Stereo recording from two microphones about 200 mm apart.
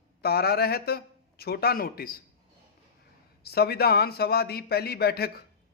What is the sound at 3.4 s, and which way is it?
A man's voice, 50° left (ahead or behind).